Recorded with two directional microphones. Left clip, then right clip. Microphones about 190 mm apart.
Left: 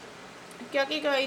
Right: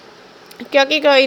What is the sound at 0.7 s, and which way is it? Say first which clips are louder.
Speech: right 15 dB; 40° right (ahead or behind).